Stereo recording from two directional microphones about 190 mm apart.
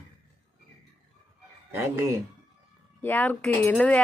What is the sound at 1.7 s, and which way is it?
Speech, 15° right (ahead or behind).